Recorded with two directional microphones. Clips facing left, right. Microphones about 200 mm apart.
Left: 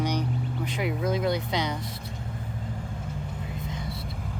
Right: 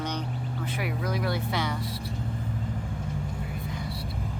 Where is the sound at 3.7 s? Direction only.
20° left (ahead or behind).